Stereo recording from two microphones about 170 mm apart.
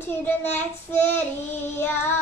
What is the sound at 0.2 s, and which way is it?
A child's voice, 10° left (ahead or behind).